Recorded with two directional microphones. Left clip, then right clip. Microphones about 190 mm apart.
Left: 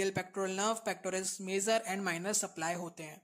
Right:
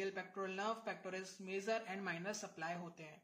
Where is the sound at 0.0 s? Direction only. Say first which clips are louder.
Left 9 dB; 45° left (ahead or behind).